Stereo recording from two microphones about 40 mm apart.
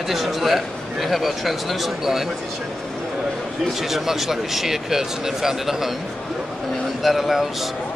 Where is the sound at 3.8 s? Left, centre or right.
Centre.